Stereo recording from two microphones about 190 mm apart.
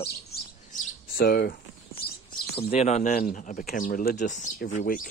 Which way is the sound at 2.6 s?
35° left (ahead or behind).